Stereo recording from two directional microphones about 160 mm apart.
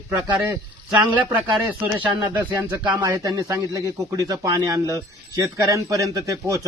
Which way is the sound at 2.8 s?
25° right (ahead or behind).